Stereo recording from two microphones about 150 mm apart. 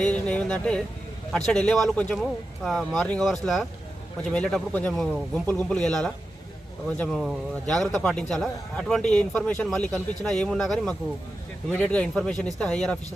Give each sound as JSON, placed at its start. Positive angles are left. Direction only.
{"t": 0.0, "sound": "a man's voice", "side_deg": 10}